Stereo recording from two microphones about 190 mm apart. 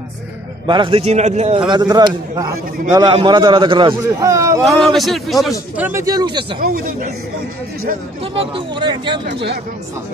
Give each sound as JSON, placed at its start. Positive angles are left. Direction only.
{"t": 0.7, "sound": "a man's voice", "side_deg": -25}
{"t": 1.7, "sound": "a man's voice", "side_deg": -20}
{"t": 4.6, "sound": "a man's voice", "side_deg": 0}
{"t": 5.8, "sound": "a man's voice", "side_deg": -10}
{"t": 6.6, "sound": "speech", "side_deg": -50}
{"t": 8.4, "sound": "a man's voice", "side_deg": -25}
{"t": 9.2, "sound": "speech", "side_deg": -60}